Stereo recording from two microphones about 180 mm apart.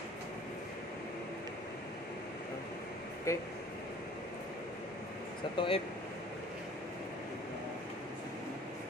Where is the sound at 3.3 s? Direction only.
15° left (ahead or behind).